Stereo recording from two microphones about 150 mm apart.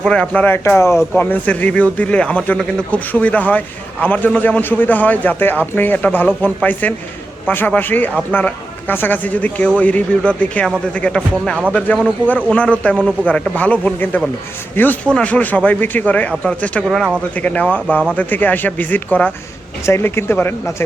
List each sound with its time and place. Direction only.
0.0 s a man's voice: 5° left (ahead or behind)
11.9 s speech: 5° right (ahead or behind)
12.5 s a man's voice: 5° left (ahead or behind)